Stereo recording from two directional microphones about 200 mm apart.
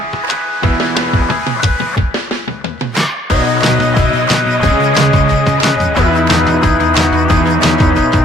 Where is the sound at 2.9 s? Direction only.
Centre (ahead or behind).